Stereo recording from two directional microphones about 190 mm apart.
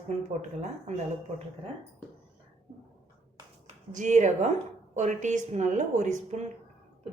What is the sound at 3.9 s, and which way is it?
A woman's voice, 40° right (ahead or behind).